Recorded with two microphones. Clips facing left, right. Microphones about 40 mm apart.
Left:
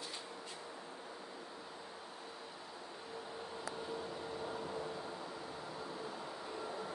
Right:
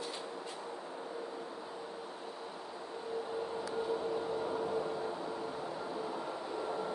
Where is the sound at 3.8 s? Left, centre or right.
Right.